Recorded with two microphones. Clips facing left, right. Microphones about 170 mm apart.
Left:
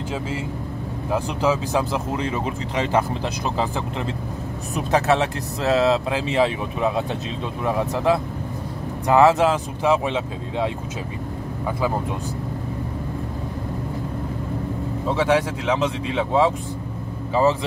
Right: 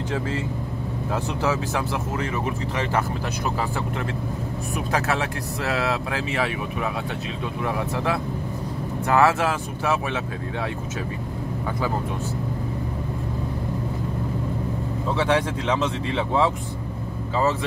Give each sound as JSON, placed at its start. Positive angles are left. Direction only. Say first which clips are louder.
{"t": 1.1, "sound": "speech", "louder": "left 4 dB", "side_deg": 15}
{"t": 4.7, "sound": "speech", "louder": "left 6 dB", "side_deg": 25}
{"t": 15.1, "sound": "speech", "louder": "left 2 dB", "side_deg": 10}